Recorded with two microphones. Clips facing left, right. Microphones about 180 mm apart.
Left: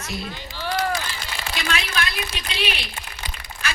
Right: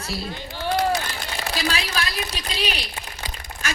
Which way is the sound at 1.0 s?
55° right (ahead or behind).